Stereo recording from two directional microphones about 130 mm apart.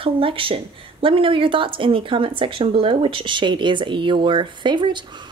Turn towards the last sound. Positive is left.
turn(degrees=-35)  # may be behind; listen again after turning